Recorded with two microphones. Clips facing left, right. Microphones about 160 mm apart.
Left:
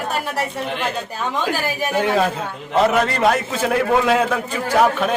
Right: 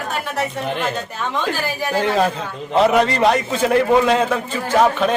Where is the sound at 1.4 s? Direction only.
10° left (ahead or behind).